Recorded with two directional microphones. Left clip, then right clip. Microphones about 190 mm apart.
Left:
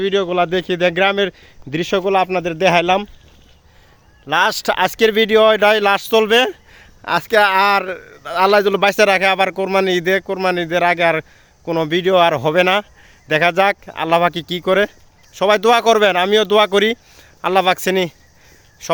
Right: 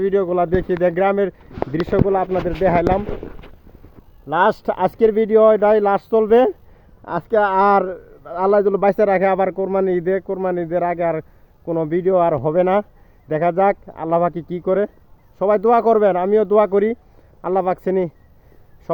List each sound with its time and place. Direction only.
0.0 s speech: 25° left (ahead or behind)
4.3 s speech: 25° left (ahead or behind)